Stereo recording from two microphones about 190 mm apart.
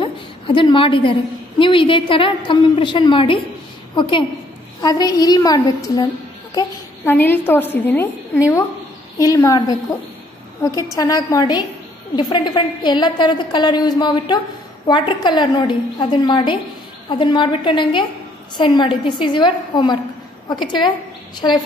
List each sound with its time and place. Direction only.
0.0 s a sound: 25° left (ahead or behind)
1.6 s a woman's voice: 25° left (ahead or behind)
7.1 s a woman's voice: 10° left (ahead or behind)
9.2 s a woman's voice: 20° left (ahead or behind)